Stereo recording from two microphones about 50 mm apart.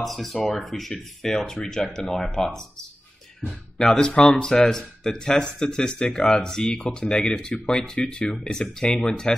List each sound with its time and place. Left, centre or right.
0.0 s speech: centre
3.7 s speech: centre